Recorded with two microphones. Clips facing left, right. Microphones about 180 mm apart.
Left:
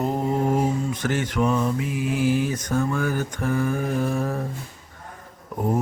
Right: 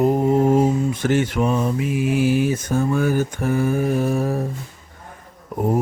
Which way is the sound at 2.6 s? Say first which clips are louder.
Right 4 dB; 25° right (ahead or behind).